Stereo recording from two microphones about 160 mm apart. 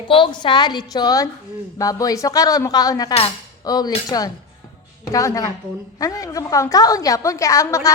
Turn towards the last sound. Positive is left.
turn(degrees=20)  # may be behind; listen again after turning